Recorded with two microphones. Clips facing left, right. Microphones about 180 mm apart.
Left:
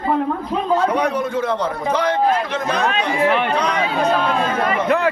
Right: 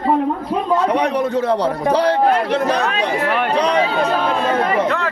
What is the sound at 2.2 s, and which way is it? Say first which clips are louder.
Speech: right 2 dB; 65° right (ahead or behind).